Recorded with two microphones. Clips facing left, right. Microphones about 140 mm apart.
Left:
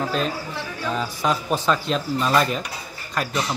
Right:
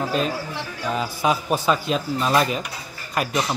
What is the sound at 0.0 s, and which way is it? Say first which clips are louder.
Speech: right 1 dB; 5° right (ahead or behind).